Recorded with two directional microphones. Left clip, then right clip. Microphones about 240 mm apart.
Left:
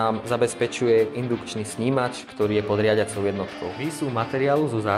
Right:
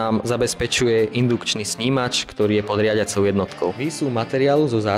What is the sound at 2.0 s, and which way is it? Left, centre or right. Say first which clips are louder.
Speech: right 4 dB; right.